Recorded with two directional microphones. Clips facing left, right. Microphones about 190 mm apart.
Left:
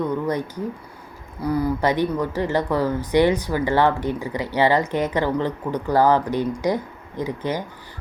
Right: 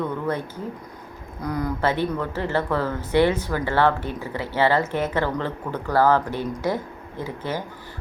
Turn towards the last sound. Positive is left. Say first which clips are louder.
# left 3 dB
turn(degrees=15)  # may be behind; listen again after turning